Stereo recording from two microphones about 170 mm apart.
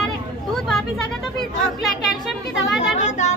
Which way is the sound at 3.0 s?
45° left (ahead or behind).